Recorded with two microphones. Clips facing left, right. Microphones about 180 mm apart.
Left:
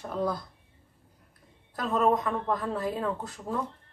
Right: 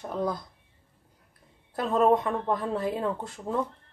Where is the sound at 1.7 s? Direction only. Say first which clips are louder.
Right 3 dB; 30° right (ahead or behind).